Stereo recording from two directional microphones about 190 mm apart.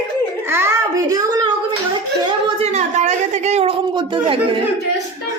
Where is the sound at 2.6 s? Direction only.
35° right (ahead or behind).